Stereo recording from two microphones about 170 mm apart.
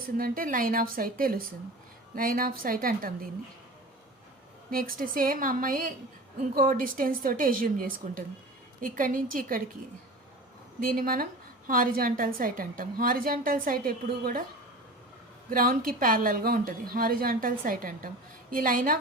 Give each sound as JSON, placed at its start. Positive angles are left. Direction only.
{"t": 0.2, "sound": "a woman's voice", "side_deg": -55}
{"t": 4.7, "sound": "a woman's voice", "side_deg": -55}
{"t": 10.8, "sound": "a woman's voice", "side_deg": -55}
{"t": 15.4, "sound": "a woman's voice", "side_deg": -55}